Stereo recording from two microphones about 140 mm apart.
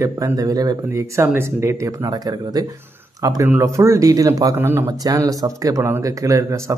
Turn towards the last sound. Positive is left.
turn(degrees=-20)  # may be behind; listen again after turning